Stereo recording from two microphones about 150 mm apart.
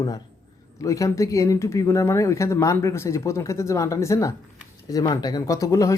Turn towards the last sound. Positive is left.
turn(degrees=20)  # may be behind; listen again after turning